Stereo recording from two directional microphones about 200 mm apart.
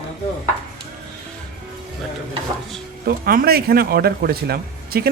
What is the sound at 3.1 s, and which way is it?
A man's voice, 50° right (ahead or behind).